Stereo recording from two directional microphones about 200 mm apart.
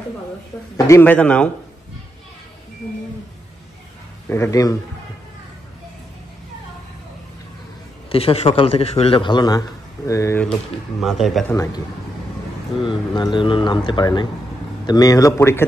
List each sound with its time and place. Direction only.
0.7 s a man's voice: 15° left (ahead or behind)
4.3 s a man's voice: 15° left (ahead or behind)
8.1 s a man's voice: 30° left (ahead or behind)
11.0 s speech: centre (ahead or behind)
11.5 s a man's voice: 15° left (ahead or behind)
12.8 s a man's voice: 25° left (ahead or behind)